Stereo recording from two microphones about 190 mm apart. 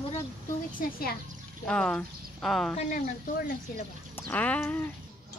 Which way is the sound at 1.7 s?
5° left (ahead or behind).